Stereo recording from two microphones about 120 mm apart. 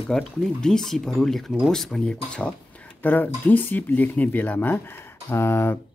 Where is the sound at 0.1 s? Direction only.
5° left (ahead or behind); by 5.8 s 20° left (ahead or behind).